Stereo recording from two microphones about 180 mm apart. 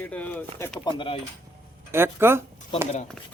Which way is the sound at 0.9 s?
30° left (ahead or behind).